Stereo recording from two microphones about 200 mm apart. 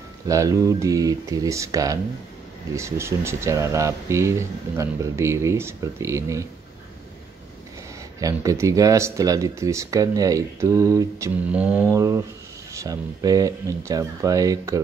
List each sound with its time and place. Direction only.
0.3 s speech: 15° right (ahead or behind)
8.2 s speech: 15° right (ahead or behind)